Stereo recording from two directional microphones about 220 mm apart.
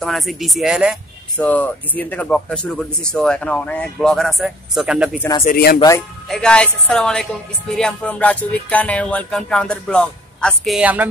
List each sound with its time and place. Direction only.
0.0 s a woman's voice: centre (ahead or behind)
1.4 s a woman's voice: 5° left (ahead or behind)
5.4 s speech: 40° left (ahead or behind)
5.8 s a man's voice: 15° left (ahead or behind)
6.2 s a woman's voice: 5° left (ahead or behind)